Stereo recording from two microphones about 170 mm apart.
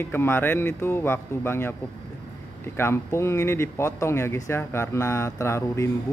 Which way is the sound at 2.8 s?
15° left (ahead or behind).